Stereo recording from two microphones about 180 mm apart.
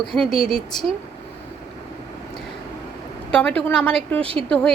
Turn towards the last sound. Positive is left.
turn(degrees=5)  # may be behind; listen again after turning